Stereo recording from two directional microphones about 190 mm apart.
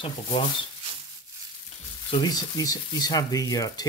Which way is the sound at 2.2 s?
20° left (ahead or behind).